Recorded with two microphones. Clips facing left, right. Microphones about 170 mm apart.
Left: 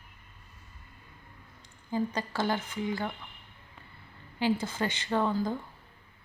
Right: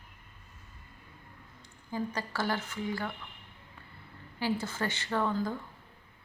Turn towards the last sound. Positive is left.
turn(degrees=15)  # may be behind; listen again after turning